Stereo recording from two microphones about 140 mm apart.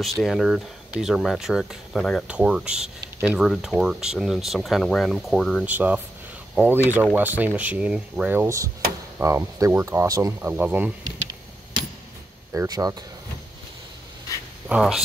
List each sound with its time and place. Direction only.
0.0 s speech: centre (ahead or behind)
5.7 s speech: 10° right (ahead or behind)
10.4 s speech: 15° right (ahead or behind)
12.5 s speech: 25° right (ahead or behind)
14.7 s speech: 5° right (ahead or behind)